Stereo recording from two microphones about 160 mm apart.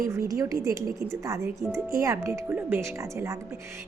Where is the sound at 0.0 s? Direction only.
20° right (ahead or behind).